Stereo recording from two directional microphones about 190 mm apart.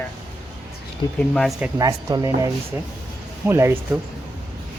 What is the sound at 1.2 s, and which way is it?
Speech, 5° left (ahead or behind).